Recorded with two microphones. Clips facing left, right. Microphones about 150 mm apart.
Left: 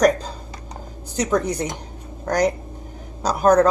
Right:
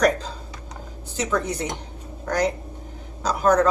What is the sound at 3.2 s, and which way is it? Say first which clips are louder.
Speech: left 3 dB; 40° left (ahead or behind).